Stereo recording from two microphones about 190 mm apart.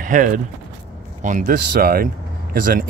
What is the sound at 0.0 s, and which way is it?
Speech, 45° right (ahead or behind).